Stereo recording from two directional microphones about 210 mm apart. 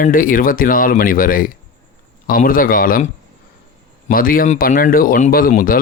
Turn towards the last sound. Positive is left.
turn(degrees=40)  # may be behind; listen again after turning